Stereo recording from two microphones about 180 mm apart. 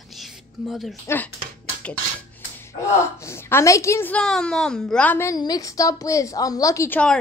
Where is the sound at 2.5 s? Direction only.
15° left (ahead or behind).